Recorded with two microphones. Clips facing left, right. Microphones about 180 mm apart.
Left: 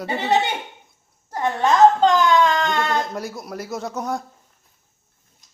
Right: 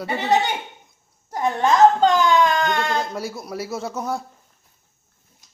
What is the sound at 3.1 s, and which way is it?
Speech, centre (ahead or behind).